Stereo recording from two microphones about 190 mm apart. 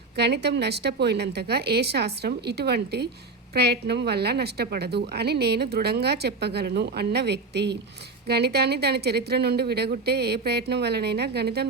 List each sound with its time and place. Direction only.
0.2 s a woman's voice: 60° right (ahead or behind)